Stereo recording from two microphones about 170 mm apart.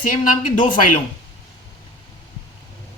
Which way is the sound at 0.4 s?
50° left (ahead or behind).